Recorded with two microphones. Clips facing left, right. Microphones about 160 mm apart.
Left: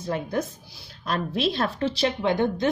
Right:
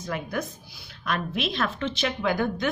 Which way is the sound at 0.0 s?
30° left (ahead or behind).